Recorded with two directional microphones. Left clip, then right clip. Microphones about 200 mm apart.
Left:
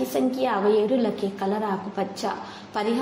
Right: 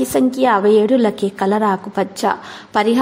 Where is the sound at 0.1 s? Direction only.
45° right (ahead or behind).